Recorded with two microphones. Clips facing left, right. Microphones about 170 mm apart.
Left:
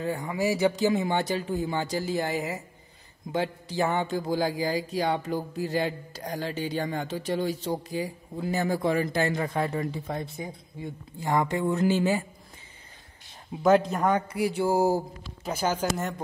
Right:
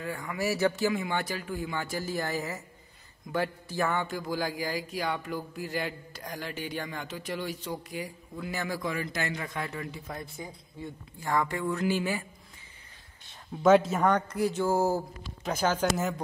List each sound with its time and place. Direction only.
0.0 s speech: 25° left (ahead or behind)
13.6 s a man's voice: centre (ahead or behind)